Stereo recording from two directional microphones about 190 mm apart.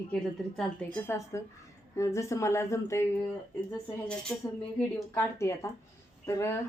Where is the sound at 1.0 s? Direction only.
15° left (ahead or behind).